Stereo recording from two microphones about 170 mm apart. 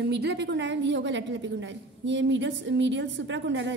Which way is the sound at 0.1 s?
80° right.